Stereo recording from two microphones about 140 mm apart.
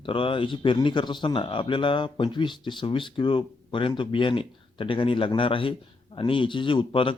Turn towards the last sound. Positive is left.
turn(degrees=40)  # may be behind; listen again after turning